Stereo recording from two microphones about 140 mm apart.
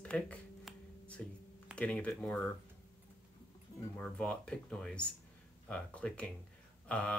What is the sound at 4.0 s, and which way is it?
Speech, 5° left (ahead or behind).